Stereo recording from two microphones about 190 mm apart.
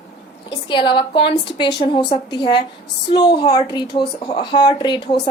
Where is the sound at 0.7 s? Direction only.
25° left (ahead or behind).